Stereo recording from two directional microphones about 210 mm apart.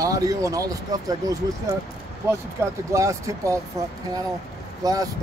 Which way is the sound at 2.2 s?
15° right (ahead or behind).